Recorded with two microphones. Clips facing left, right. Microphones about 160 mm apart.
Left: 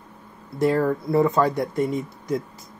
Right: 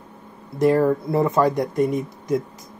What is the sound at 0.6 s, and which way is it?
Speech, 15° right (ahead or behind).